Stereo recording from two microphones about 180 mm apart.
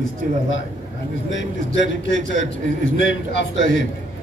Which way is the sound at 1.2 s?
90° left.